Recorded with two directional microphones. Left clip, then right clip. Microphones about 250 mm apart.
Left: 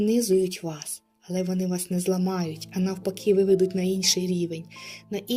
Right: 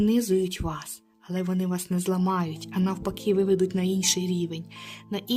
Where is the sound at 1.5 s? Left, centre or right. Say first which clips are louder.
Left 1 dB; centre.